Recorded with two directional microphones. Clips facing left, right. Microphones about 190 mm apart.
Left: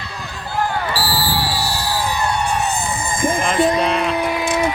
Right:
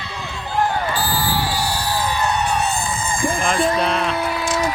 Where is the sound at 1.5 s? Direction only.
10° left (ahead or behind).